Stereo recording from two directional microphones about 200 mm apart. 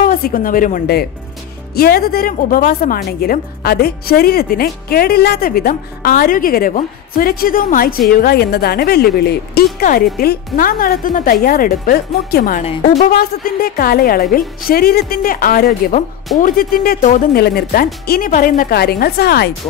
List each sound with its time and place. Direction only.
0.0 s a woman's voice: 45° left (ahead or behind)